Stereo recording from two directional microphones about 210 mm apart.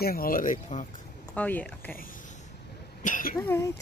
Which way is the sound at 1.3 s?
10° left (ahead or behind).